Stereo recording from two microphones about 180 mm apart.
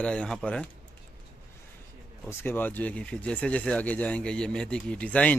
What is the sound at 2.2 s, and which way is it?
Speech, 10° left (ahead or behind).